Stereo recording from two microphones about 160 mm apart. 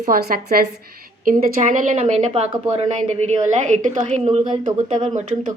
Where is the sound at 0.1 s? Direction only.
70° right (ahead or behind).